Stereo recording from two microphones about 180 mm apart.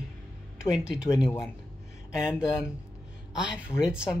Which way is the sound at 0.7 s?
5° right (ahead or behind).